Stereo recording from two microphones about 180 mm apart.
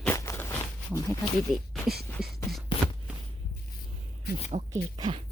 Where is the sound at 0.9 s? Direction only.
20° left (ahead or behind).